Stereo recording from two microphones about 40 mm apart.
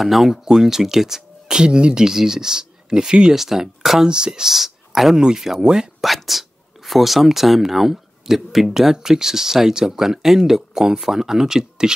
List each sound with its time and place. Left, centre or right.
0.0 s speech: centre
3.3 s speech: centre
4.1 s speech: centre
5.9 s speech: centre